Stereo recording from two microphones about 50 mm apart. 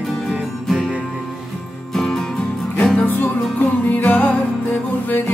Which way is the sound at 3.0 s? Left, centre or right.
Left.